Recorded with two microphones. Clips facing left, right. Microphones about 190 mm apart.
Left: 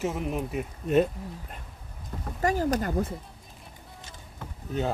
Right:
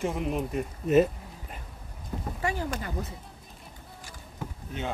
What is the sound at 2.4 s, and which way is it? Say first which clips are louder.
Speech: left 7 dB; 40° left (ahead or behind).